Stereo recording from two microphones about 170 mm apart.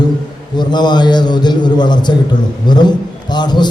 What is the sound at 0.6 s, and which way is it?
A man's voice, 25° left (ahead or behind).